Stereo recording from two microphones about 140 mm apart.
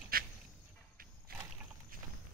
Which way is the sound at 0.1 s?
90° right.